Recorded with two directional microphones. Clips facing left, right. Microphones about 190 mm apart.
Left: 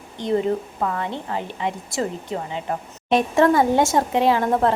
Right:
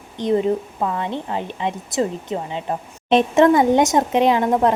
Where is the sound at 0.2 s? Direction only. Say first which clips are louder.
Right 3 dB; 20° right (ahead or behind).